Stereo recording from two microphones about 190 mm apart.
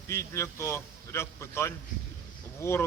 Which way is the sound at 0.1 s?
15° left (ahead or behind).